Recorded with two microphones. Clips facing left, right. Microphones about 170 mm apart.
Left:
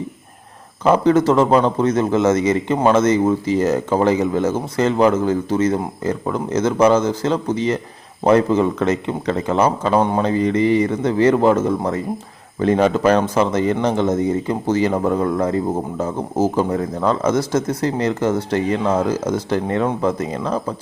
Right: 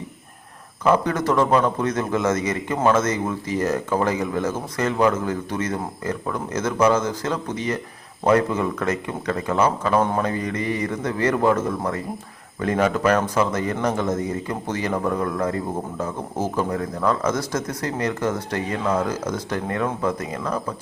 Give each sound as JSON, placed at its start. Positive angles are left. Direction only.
{"t": 0.9, "sound": "a man's voice", "side_deg": 25}
{"t": 16.6, "sound": "a man's voice", "side_deg": 25}